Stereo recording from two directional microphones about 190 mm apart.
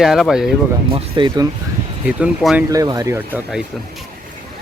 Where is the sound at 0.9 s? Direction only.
25° right (ahead or behind).